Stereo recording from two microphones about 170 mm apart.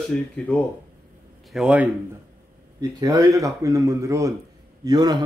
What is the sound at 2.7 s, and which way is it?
Speech, 20° right (ahead or behind).